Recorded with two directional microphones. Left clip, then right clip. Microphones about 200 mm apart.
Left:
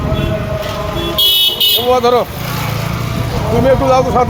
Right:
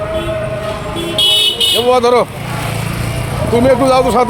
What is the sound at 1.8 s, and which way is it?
Speech, 30° right (ahead or behind).